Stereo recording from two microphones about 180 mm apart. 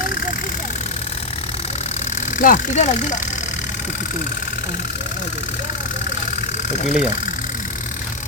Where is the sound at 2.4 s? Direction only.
45° left (ahead or behind).